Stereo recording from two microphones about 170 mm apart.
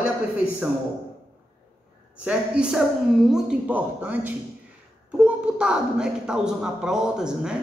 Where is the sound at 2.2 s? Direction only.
5° right (ahead or behind).